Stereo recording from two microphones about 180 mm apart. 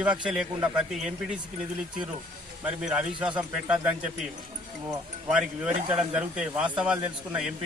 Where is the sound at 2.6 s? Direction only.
5° right (ahead or behind).